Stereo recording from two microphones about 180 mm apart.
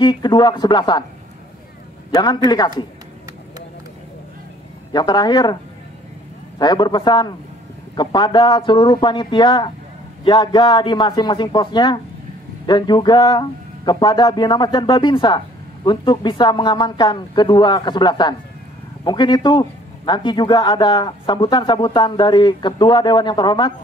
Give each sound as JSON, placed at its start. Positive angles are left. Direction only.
{"t": 0.0, "sound": "a man's voice", "side_deg": 25}
{"t": 2.0, "sound": "a man's voice", "side_deg": 25}
{"t": 4.9, "sound": "a man's voice", "side_deg": 20}
{"t": 6.6, "sound": "a man's voice", "side_deg": 25}